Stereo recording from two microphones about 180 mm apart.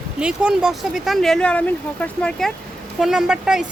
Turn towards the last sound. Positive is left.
turn(degrees=-5)  # may be behind; listen again after turning